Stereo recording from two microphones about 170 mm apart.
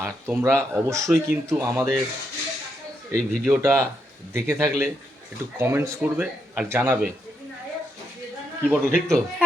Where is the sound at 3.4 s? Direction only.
10° right (ahead or behind).